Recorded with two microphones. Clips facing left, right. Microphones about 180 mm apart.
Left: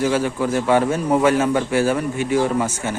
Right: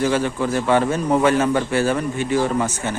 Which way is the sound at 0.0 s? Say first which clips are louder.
Even; 10° left (ahead or behind).